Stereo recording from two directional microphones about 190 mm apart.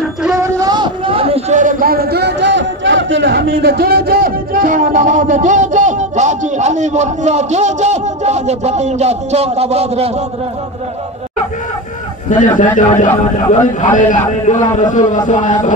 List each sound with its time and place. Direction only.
0.4 s a man's voice: 20° right (ahead or behind)
12.3 s a man's voice: 40° left (ahead or behind)